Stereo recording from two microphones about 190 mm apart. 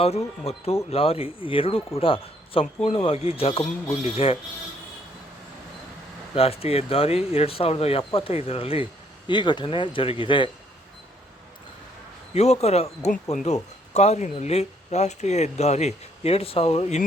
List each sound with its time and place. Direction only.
0.0 s speech: 35° left (ahead or behind)
6.3 s speech: 30° left (ahead or behind)
12.3 s speech: 35° left (ahead or behind)